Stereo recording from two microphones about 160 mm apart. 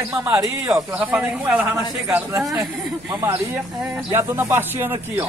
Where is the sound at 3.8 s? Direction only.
10° right (ahead or behind).